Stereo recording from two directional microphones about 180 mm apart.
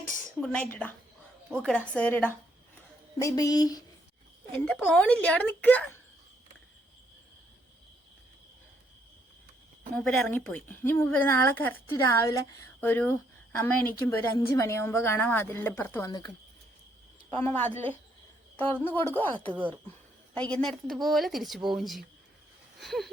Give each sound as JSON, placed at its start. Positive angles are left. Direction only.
{"t": 0.3, "sound": "a woman's voice", "side_deg": 5}
{"t": 4.5, "sound": "a woman's voice", "side_deg": 5}
{"t": 9.9, "sound": "a woman's voice", "side_deg": 5}
{"t": 17.3, "sound": "a woman's voice", "side_deg": 10}